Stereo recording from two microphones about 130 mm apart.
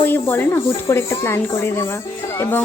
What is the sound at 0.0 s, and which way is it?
Speech, 15° left (ahead or behind).